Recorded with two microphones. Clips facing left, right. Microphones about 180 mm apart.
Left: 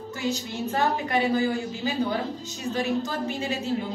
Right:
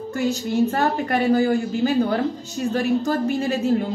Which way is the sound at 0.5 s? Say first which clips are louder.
Right 7 dB; 50° right (ahead or behind).